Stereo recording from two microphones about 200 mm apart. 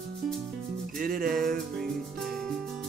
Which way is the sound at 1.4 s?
Centre (ahead or behind).